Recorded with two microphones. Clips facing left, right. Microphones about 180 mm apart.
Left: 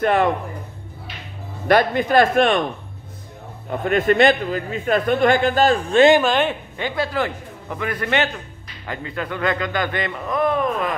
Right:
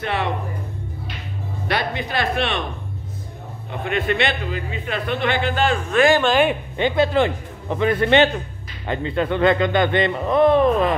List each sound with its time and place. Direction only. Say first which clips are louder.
0.0 s speech: left 7 dB; 50° left (ahead or behind)
1.7 s speech: left 8 dB; 45° left (ahead or behind)
3.8 s speech: left 6 dB; 45° left (ahead or behind); by 6.1 s 30° left (ahead or behind)
6.2 s speech: right 2 dB; 5° right (ahead or behind)
6.8 s a man's voice: right 6 dB; 25° right (ahead or behind)